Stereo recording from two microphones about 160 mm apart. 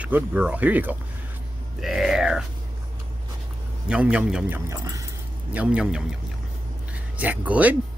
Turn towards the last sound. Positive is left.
turn(degrees=-10)  # may be behind; listen again after turning